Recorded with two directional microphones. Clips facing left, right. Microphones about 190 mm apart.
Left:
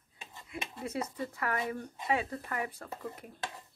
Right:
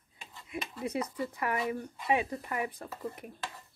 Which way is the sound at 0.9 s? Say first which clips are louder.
Right 2 dB; 15° right (ahead or behind).